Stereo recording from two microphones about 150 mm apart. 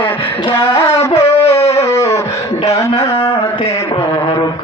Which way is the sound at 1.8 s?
20° left (ahead or behind).